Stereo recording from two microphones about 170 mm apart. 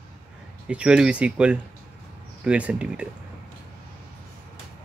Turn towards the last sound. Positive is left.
turn(degrees=-5)  # may be behind; listen again after turning